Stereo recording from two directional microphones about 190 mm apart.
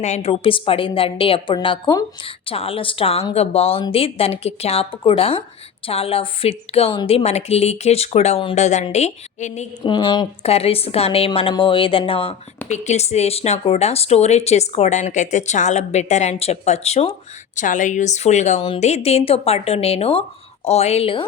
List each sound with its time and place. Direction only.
0.0 s a woman's voice: 35° left (ahead or behind)
9.8 s a woman's voice: 25° left (ahead or behind)